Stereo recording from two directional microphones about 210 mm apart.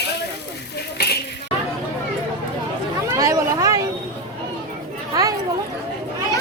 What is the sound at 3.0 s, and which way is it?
Speech, 15° right (ahead or behind).